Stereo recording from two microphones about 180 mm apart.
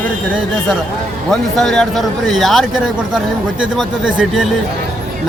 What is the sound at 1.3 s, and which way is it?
Speech, centre (ahead or behind).